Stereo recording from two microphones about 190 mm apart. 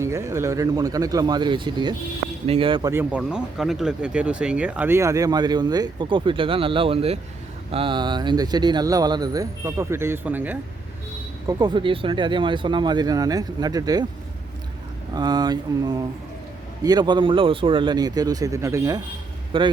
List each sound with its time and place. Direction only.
0.0 s speech: 15° right (ahead or behind)
2.9 s speech: 10° right (ahead or behind)
11.4 s speech: 25° right (ahead or behind)
15.1 s speech: 20° right (ahead or behind)